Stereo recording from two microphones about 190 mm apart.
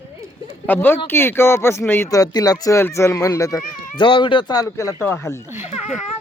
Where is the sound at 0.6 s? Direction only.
10° left (ahead or behind).